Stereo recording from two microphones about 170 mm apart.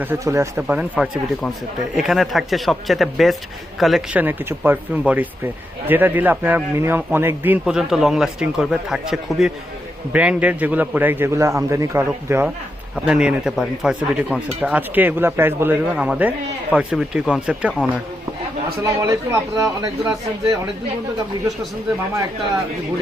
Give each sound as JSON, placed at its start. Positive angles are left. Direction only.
{"t": 0.0, "sound": "a man's voice", "side_deg": -15}
{"t": 18.8, "sound": "speech", "side_deg": -20}